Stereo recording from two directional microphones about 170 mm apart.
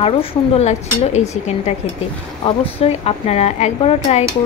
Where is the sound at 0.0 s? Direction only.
35° left (ahead or behind).